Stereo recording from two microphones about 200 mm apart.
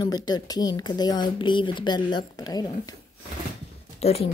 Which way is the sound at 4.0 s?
30° left (ahead or behind).